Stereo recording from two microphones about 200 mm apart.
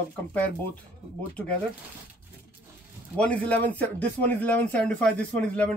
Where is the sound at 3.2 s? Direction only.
5° left (ahead or behind).